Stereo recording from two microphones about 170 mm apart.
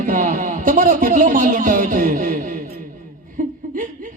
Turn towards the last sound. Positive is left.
turn(degrees=-50)  # may be behind; listen again after turning